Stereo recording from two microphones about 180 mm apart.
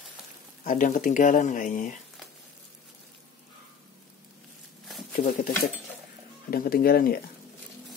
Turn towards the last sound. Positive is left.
turn(degrees=55)  # may be behind; listen again after turning